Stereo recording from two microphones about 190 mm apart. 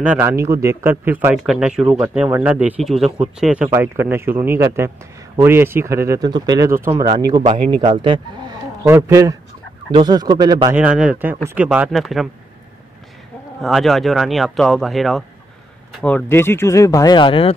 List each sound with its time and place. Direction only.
0.0 s speech: 10° right (ahead or behind); by 8.2 s 25° right (ahead or behind)
8.8 s speech: 15° right (ahead or behind)
10.7 s speech: 5° right (ahead or behind)
13.6 s speech: centre (ahead or behind); by 17.6 s 30° left (ahead or behind)